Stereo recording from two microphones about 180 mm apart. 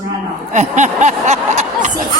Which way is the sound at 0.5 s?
40° right (ahead or behind).